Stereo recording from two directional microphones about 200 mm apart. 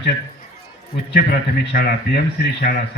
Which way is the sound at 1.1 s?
50° left (ahead or behind).